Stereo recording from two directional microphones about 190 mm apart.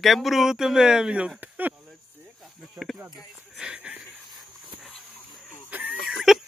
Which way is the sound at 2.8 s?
Centre (ahead or behind).